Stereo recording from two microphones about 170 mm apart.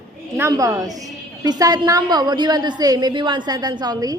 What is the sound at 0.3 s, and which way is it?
A woman's voice, 20° right (ahead or behind).